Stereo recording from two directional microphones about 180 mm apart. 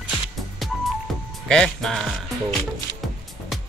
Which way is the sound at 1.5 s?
5° left (ahead or behind).